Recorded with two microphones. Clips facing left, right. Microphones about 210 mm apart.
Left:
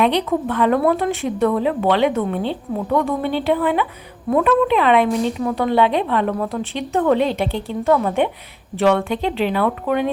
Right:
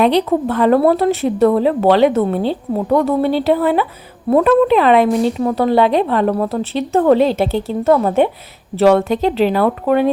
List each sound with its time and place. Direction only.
0.0 s a woman's voice: 35° right (ahead or behind)